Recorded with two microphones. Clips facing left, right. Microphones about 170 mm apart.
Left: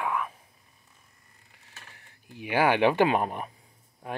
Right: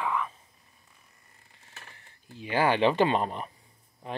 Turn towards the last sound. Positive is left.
turn(degrees=10)  # may be behind; listen again after turning